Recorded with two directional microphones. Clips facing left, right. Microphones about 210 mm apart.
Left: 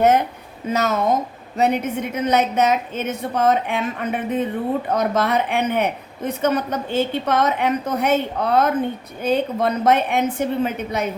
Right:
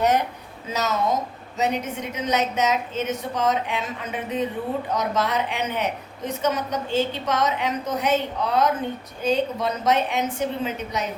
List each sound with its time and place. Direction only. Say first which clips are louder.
0.7 s a woman's voice: left 4 dB; 55° left (ahead or behind)